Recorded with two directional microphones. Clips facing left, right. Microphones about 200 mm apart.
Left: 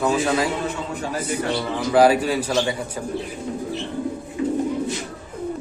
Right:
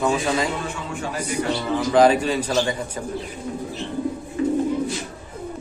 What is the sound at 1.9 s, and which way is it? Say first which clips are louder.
Speech: left 1 dB; 10° left (ahead or behind).